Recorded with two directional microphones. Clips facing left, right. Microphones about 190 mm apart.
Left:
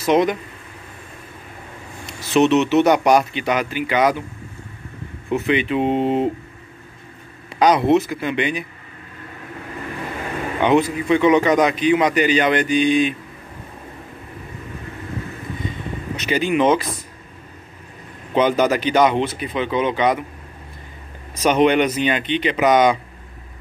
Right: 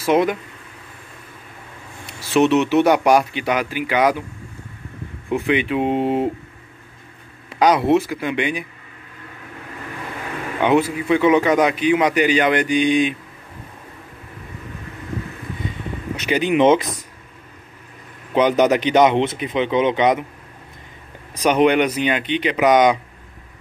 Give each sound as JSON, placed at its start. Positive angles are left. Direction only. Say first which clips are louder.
{"t": 0.0, "sound": "a man's voice", "louder": "even", "side_deg": -5}
{"t": 2.3, "sound": "a man's voice", "louder": "even", "side_deg": -10}
{"t": 5.3, "sound": "a man's voice", "louder": "even", "side_deg": -10}
{"t": 7.5, "sound": "a man's voice", "louder": "even", "side_deg": -10}
{"t": 10.6, "sound": "a man's voice", "louder": "even", "side_deg": -10}
{"t": 16.2, "sound": "speech", "louder": "right 2 dB", "side_deg": -15}
{"t": 18.3, "sound": "speech", "louder": "right 1 dB", "side_deg": -15}
{"t": 21.4, "sound": "a man's voice", "louder": "even", "side_deg": -10}